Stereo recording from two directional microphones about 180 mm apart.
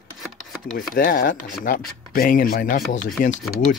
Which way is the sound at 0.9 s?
50° left (ahead or behind).